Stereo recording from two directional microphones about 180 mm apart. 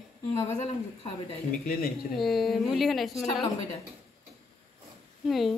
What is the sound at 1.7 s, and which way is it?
Speech, 55° left (ahead or behind).